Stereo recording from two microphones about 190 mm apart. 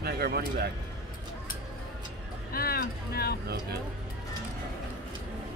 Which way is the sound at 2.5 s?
50° left (ahead or behind).